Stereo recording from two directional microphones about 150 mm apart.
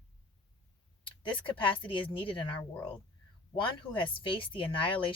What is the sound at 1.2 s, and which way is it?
Speech, 35° left (ahead or behind).